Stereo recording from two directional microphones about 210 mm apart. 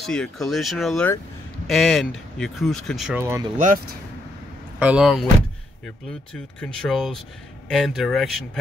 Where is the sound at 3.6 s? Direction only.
40° right (ahead or behind).